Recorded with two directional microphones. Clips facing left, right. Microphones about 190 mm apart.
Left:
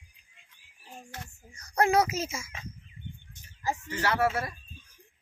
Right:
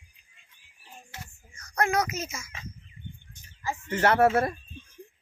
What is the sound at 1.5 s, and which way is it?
A child's voice, 35° left (ahead or behind).